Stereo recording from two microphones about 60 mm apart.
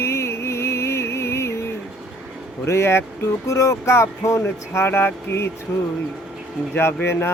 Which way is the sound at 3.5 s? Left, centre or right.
Left.